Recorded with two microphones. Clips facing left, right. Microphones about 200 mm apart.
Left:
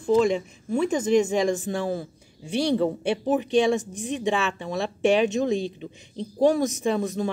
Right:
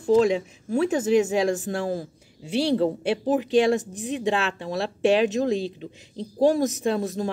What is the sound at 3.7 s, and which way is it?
Speech, 5° right (ahead or behind).